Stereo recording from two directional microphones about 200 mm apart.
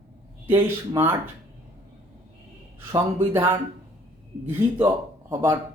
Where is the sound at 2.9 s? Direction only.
10° right (ahead or behind).